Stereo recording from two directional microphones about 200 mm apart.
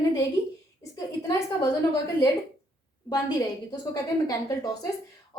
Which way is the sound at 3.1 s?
20° left (ahead or behind).